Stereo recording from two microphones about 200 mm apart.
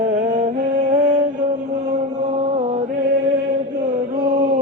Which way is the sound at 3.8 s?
50° right (ahead or behind).